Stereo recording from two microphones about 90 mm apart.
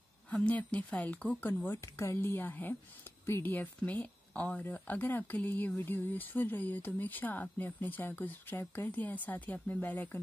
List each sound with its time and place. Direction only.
0.3 s speech: 15° left (ahead or behind)